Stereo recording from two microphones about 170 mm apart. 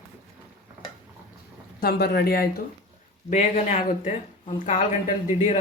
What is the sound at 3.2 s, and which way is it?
Speech, 45° left (ahead or behind).